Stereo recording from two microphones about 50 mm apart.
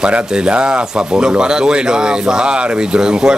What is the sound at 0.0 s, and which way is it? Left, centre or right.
Speech, centre.